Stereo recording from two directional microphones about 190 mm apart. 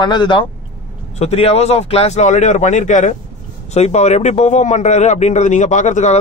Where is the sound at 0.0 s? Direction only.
25° left (ahead or behind).